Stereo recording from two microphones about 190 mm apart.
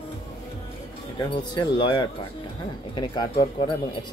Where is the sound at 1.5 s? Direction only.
25° left (ahead or behind).